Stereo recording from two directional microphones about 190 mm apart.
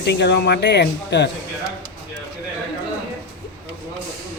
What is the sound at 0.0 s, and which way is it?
A man's voice, 60° left (ahead or behind).